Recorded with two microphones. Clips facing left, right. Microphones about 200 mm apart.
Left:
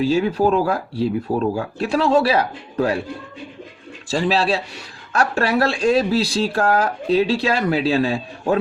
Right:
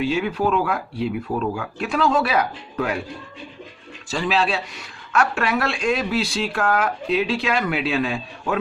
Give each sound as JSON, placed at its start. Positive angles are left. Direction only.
{"t": 0.0, "sound": "speech", "side_deg": 35}
{"t": 4.1, "sound": "speech", "side_deg": 35}